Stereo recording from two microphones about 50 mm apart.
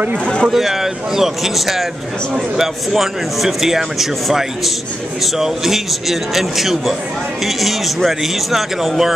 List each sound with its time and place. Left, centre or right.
0.2 s speech: centre
0.5 s speech: centre